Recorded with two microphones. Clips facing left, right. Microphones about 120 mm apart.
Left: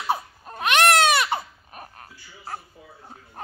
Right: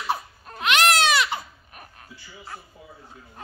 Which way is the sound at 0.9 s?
50° left (ahead or behind).